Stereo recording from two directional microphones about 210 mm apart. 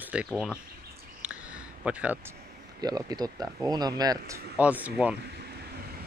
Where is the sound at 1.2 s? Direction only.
5° right (ahead or behind).